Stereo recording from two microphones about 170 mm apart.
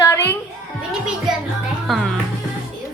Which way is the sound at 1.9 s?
Centre (ahead or behind).